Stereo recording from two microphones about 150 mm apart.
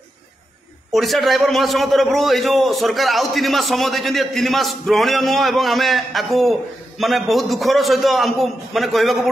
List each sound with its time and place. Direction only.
0.9 s a man's voice: centre (ahead or behind)